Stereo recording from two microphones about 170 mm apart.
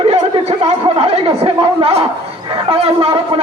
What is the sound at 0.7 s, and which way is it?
Speech, 35° right (ahead or behind).